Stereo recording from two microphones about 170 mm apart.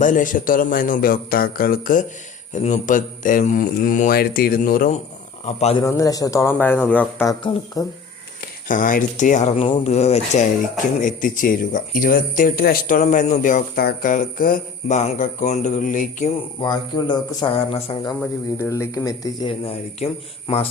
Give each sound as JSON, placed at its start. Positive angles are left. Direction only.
{"t": 0.0, "sound": "speech", "side_deg": 50}
{"t": 2.5, "sound": "speech", "side_deg": 45}
{"t": 5.5, "sound": "speech", "side_deg": 40}
{"t": 5.8, "sound": "speech", "side_deg": 20}
{"t": 7.3, "sound": "speech", "side_deg": 25}
{"t": 8.6, "sound": "speech", "side_deg": 50}
{"t": 9.6, "sound": "speech", "side_deg": 30}
{"t": 11.0, "sound": "speech", "side_deg": 50}
{"t": 16.6, "sound": "speech", "side_deg": 25}
{"t": 18.5, "sound": "speech", "side_deg": 15}
{"t": 20.0, "sound": "speech", "side_deg": 35}